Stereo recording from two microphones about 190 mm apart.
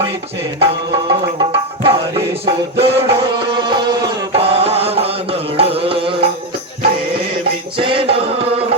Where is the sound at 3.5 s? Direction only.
25° right (ahead or behind).